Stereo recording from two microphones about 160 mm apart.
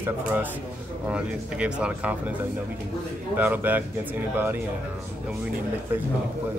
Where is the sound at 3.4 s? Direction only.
10° right (ahead or behind).